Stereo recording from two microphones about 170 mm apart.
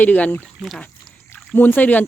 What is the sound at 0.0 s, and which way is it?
Speech, 10° left (ahead or behind).